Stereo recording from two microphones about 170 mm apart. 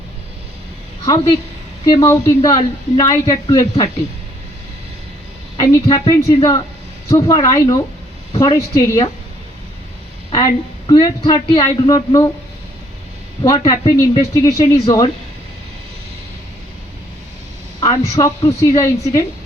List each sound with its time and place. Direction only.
1.0 s a woman's voice: 20° left (ahead or behind)
5.5 s a woman's voice: 20° left (ahead or behind)
8.3 s a sound: 20° left (ahead or behind)
8.7 s a woman's voice: 20° left (ahead or behind)
10.3 s a woman's voice: 20° left (ahead or behind)
13.4 s a woman's voice: 20° left (ahead or behind)
17.7 s a woman's voice: 20° left (ahead or behind)